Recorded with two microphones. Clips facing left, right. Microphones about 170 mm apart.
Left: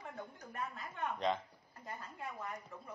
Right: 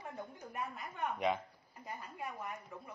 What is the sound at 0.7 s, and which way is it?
Speech, 10° right (ahead or behind).